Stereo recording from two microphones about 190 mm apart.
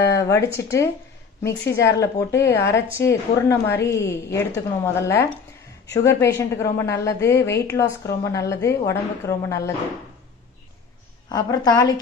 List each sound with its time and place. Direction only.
0.0 s a woman's voice: 15° left (ahead or behind)
11.2 s a woman's voice: 20° left (ahead or behind)